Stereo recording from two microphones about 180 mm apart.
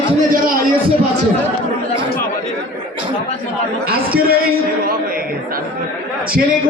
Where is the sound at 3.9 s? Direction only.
55° right (ahead or behind).